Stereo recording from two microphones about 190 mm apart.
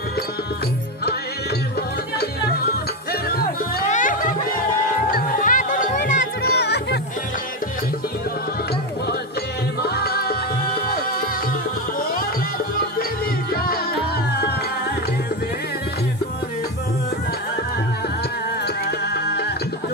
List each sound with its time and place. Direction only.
2.1 s music: 55° left (ahead or behind)
3.8 s music: 40° left (ahead or behind)
6.5 s music: 60° left (ahead or behind)
9.8 s music: 55° left (ahead or behind)
18.9 s music: 60° left (ahead or behind)